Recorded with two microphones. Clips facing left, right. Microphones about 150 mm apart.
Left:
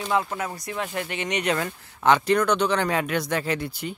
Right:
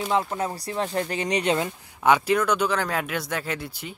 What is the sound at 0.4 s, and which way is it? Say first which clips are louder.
Speech: right 3 dB; 30° right (ahead or behind).